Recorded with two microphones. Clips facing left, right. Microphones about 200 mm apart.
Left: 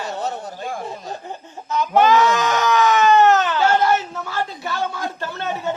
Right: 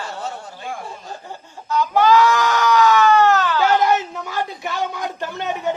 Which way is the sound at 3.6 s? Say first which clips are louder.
Even; 15° right (ahead or behind).